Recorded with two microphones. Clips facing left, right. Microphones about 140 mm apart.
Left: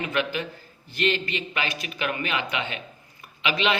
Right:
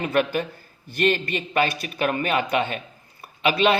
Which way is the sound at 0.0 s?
45° right (ahead or behind).